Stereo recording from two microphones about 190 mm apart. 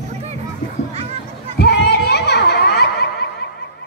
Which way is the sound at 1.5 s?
60° left (ahead or behind).